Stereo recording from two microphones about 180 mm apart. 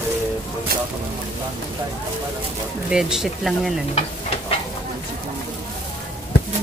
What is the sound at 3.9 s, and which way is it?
Stir, 35° left (ahead or behind).